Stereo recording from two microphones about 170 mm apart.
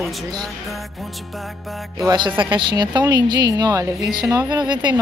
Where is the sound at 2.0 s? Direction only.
25° right (ahead or behind).